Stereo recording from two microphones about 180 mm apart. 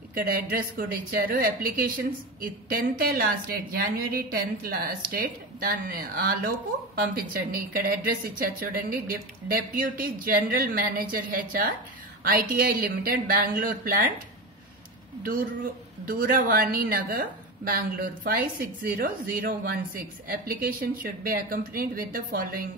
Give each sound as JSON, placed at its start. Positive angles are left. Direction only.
{"t": 0.1, "sound": "a woman's voice", "side_deg": -55}
{"t": 16.1, "sound": "a woman's voice", "side_deg": -50}